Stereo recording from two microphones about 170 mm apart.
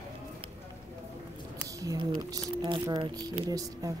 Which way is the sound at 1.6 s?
20° right (ahead or behind).